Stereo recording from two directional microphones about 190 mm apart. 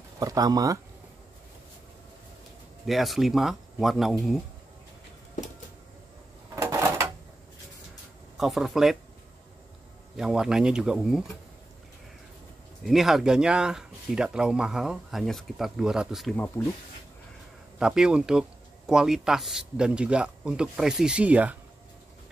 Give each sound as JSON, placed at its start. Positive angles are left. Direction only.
{"t": 0.2, "sound": "speech", "side_deg": -20}
{"t": 2.9, "sound": "speech", "side_deg": 0}
{"t": 6.5, "sound": "a sound", "side_deg": -15}
{"t": 8.4, "sound": "speech", "side_deg": 0}
{"t": 10.1, "sound": "speech", "side_deg": -5}
{"t": 12.8, "sound": "speech", "side_deg": 0}
{"t": 17.7, "sound": "speech", "side_deg": -5}